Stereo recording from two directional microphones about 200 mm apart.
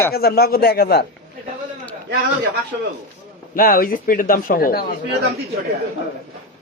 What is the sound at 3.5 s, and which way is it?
Speech, 45° left (ahead or behind).